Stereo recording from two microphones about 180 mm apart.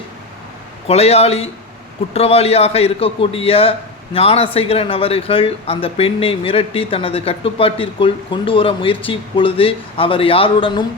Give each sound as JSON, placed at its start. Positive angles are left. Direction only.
{"t": 0.9, "sound": "a man's voice", "side_deg": 35}